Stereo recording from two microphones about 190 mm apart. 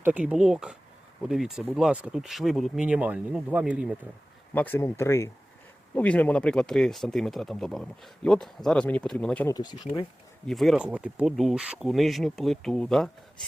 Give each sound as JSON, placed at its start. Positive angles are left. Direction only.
{"t": 0.0, "sound": "speech", "side_deg": -10}
{"t": 4.5, "sound": "speech", "side_deg": 10}
{"t": 9.6, "sound": "speech", "side_deg": 20}
{"t": 10.4, "sound": "speech", "side_deg": 0}